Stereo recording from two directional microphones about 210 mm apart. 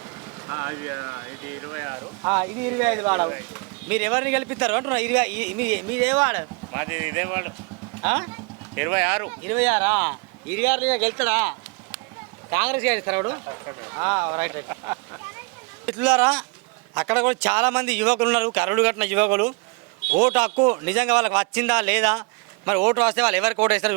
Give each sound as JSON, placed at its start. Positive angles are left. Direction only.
{"t": 0.4, "sound": "speech", "side_deg": -15}